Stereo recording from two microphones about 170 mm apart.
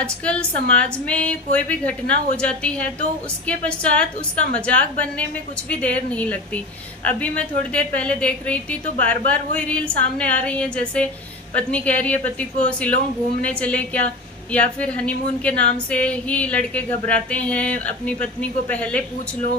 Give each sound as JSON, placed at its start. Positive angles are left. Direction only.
{"t": 0.0, "sound": "a woman's voice", "side_deg": 5}